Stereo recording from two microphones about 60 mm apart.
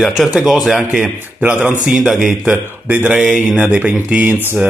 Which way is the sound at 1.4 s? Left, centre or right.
Right.